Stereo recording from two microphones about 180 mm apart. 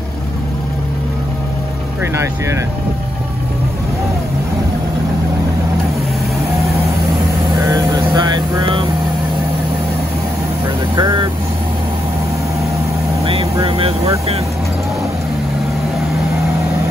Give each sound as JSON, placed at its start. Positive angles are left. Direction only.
{"t": 7.6, "sound": "vehicle", "side_deg": -20}
{"t": 11.0, "sound": "speech", "side_deg": -25}
{"t": 13.2, "sound": "vehicle", "side_deg": -30}